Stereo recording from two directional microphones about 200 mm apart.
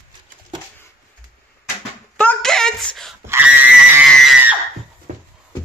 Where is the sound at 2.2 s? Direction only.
5° left (ahead or behind).